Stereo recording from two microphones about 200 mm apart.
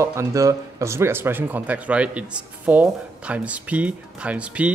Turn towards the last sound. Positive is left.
turn(degrees=-5)  # may be behind; listen again after turning